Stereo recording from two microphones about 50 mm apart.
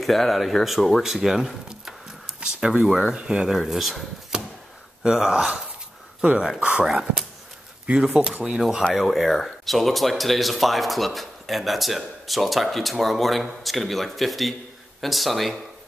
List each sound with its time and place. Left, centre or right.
0.0 s speech: centre
1.0 s keys jangling: centre
2.4 s speech: centre
3.5 s speech: centre
4.3 s a sound: centre
5.0 s speech: centre
6.6 s speech: right
6.9 s speech: centre
7.8 s speech: centre
8.5 s speech: centre